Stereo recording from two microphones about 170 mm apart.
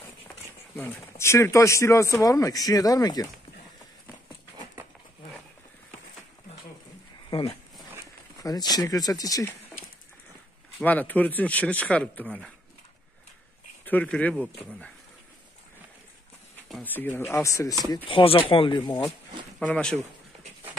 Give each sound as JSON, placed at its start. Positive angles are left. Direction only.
{"t": 0.7, "sound": "speech", "side_deg": 15}
{"t": 7.2, "sound": "a sound", "side_deg": 30}
{"t": 8.4, "sound": "speech", "side_deg": 20}
{"t": 10.8, "sound": "speech", "side_deg": 10}
{"t": 13.8, "sound": "speech", "side_deg": 10}
{"t": 16.6, "sound": "speech", "side_deg": 5}
{"t": 18.0, "sound": "speech", "side_deg": 30}
{"t": 19.6, "sound": "speech", "side_deg": 5}